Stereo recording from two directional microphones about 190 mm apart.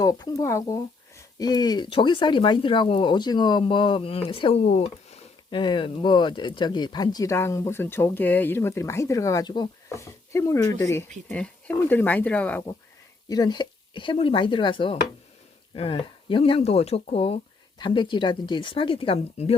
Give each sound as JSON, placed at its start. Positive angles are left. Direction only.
{"t": 0.0, "sound": "speech", "side_deg": 20}
{"t": 11.3, "sound": "speech", "side_deg": 5}
{"t": 13.2, "sound": "speech", "side_deg": 20}